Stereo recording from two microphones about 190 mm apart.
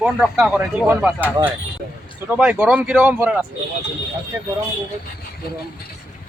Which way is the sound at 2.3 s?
5° right (ahead or behind).